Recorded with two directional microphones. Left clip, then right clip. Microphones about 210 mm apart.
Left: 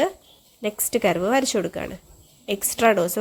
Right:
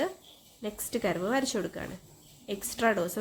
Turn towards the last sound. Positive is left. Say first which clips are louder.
# left 9 dB
turn(degrees=25)  # may be behind; listen again after turning